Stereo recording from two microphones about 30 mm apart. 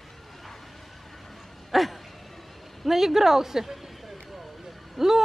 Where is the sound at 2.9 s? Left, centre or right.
Centre.